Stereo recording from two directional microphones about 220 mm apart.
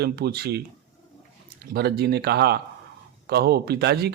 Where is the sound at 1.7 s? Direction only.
45° right (ahead or behind).